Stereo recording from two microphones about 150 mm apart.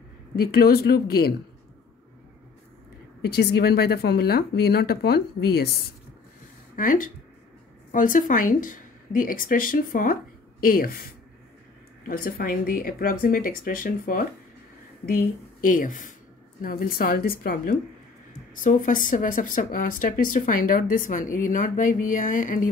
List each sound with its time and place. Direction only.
0.4 s speech: 90° left
3.3 s speech: 90° left
6.8 s speech: 65° left (ahead or behind)
12.1 s speech: 75° left (ahead or behind)
16.6 s speech: 75° left (ahead or behind)
18.6 s speech: 60° left (ahead or behind)